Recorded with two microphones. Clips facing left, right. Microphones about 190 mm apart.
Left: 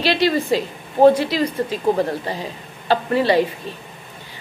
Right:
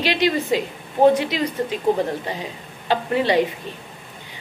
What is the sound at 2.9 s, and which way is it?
Speech, 15° right (ahead or behind).